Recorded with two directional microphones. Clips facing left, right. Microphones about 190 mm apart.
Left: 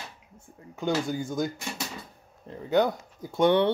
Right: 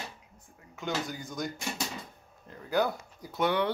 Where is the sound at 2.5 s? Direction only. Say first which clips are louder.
Left 5 dB; 20° left (ahead or behind).